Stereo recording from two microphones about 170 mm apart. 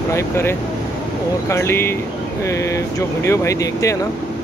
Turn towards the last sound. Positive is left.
turn(degrees=20)  # may be behind; listen again after turning